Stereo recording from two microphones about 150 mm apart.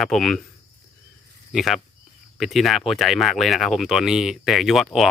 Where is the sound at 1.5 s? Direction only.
Centre (ahead or behind).